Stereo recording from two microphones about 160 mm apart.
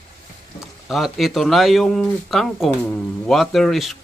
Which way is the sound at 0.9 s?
Centre (ahead or behind).